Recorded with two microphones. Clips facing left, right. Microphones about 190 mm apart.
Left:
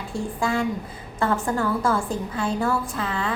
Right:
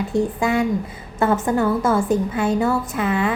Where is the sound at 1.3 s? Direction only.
20° right (ahead or behind).